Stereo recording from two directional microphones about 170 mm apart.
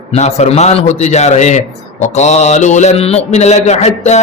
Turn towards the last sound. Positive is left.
turn(degrees=40)  # may be behind; listen again after turning